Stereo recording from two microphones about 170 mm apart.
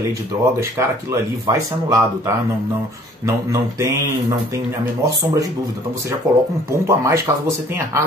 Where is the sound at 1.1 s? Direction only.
20° right (ahead or behind).